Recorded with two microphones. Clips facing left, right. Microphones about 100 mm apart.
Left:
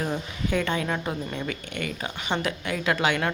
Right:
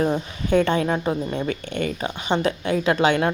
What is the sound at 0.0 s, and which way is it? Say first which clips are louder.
A woman's voice: right 6 dB; 30° right (ahead or behind).